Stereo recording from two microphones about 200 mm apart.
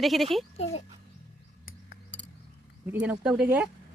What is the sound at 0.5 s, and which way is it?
Speech, 30° left (ahead or behind).